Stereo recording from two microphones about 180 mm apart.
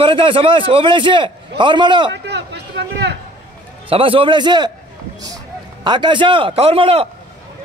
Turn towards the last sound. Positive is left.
turn(degrees=-30)  # may be behind; listen again after turning